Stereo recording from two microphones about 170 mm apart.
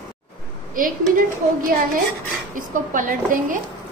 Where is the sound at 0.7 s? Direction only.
55° right (ahead or behind).